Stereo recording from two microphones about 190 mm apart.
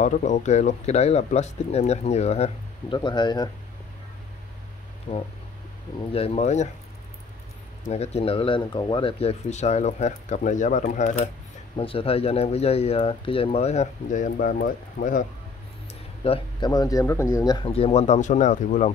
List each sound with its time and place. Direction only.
0.0 s speech: 40° left (ahead or behind); by 3.4 s 25° left (ahead or behind)
5.1 s speech: 35° left (ahead or behind)
7.8 s speech: 35° left (ahead or behind)
11.7 s speech: 30° left (ahead or behind); by 15.2 s 45° left (ahead or behind)
16.3 s speech: 25° left (ahead or behind); by 18.9 s 40° left (ahead or behind)